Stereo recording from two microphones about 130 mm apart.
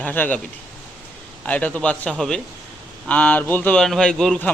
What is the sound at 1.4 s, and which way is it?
A man's voice, 10° left (ahead or behind).